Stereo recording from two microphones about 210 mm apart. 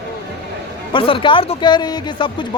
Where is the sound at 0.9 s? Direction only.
25° left (ahead or behind).